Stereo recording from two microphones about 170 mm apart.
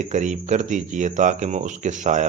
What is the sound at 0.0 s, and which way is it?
Speech, 45° right (ahead or behind).